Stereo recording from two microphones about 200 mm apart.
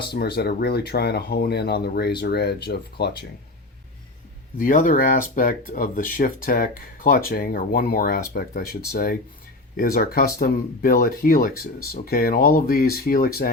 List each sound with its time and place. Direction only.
0.1 s speech: 55° left (ahead or behind)
4.5 s speech: 40° left (ahead or behind)